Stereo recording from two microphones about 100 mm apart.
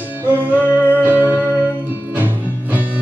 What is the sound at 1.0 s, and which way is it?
Music, 20° right (ahead or behind).